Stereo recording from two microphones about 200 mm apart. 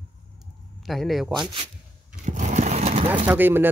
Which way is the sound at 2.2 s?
40° right (ahead or behind).